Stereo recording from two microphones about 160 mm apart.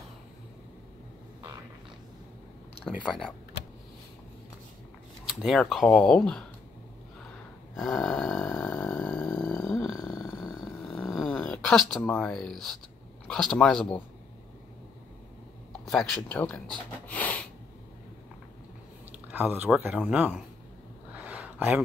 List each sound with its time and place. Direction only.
2.8 s speech: centre (ahead or behind)
5.2 s speech: centre (ahead or behind)
7.7 s a sound: centre (ahead or behind); by 10.2 s 20° left (ahead or behind)
10.4 s a sound: 5° right (ahead or behind)
13.3 s speech: 5° left (ahead or behind)
15.8 s speech: 5° left (ahead or behind)
17.1 s snort: 10° left (ahead or behind)
19.3 s speech: 10° right (ahead or behind)
21.1 s a sound: 10° right (ahead or behind)